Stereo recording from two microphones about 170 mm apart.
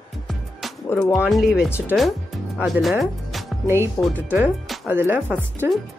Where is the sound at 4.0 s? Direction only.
15° left (ahead or behind).